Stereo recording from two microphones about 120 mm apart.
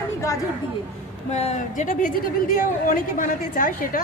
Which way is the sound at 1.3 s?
65° left (ahead or behind).